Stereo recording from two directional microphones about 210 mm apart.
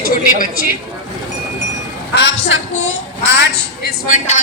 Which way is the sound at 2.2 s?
60° left (ahead or behind).